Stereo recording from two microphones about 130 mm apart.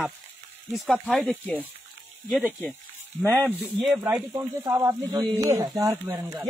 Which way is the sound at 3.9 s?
20° right (ahead or behind).